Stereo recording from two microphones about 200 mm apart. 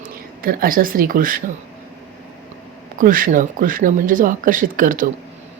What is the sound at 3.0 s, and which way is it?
Speech, 45° right (ahead or behind).